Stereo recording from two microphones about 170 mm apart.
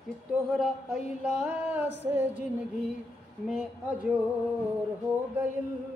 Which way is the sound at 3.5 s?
5° right (ahead or behind).